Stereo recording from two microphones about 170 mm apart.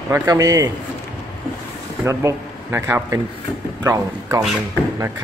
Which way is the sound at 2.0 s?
15° right (ahead or behind).